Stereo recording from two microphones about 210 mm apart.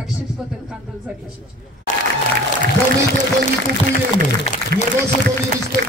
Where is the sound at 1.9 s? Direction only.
35° left (ahead or behind).